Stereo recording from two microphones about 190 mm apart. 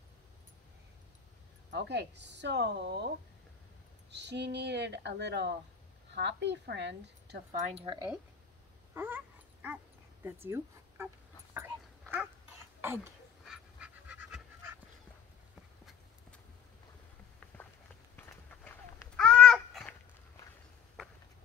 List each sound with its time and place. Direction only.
1.7 s speech: 65° right (ahead or behind)
4.1 s speech: 65° right (ahead or behind)
7.6 s speech: 30° right (ahead or behind)
8.9 s dog: 10° right (ahead or behind)
10.2 s speech: 15° right (ahead or behind)
11.5 s dog: 10° right (ahead or behind)
12.8 s pant: 10° right (ahead or behind)
18.1 s a sound: 10° left (ahead or behind)